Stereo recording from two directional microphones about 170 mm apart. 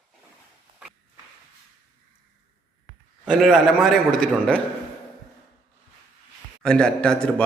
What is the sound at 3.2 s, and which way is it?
A man's voice, centre (ahead or behind).